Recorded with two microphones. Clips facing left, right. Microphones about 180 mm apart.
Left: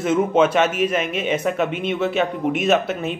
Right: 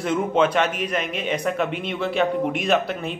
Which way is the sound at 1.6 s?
25° left (ahead or behind).